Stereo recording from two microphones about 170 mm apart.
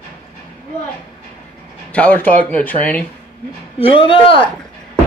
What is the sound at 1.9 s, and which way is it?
Speech, 10° left (ahead or behind).